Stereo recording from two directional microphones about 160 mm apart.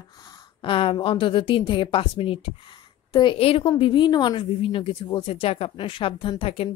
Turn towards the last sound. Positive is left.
turn(degrees=35)  # may be behind; listen again after turning